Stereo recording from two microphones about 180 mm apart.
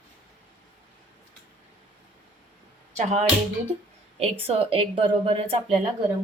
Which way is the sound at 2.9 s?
35° right (ahead or behind).